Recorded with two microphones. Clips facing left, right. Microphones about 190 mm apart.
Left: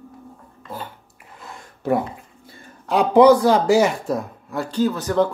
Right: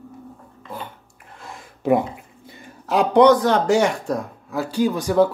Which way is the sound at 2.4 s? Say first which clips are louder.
Right 2 dB; 15° right (ahead or behind).